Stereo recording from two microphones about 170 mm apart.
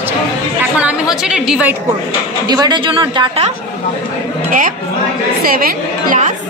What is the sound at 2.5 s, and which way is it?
A woman's voice, 25° right (ahead or behind).